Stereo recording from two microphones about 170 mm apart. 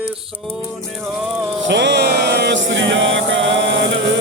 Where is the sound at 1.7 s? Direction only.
90° right.